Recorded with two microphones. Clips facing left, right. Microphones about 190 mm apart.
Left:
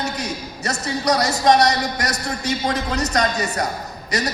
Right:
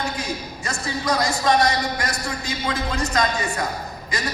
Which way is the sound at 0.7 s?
40° left (ahead or behind).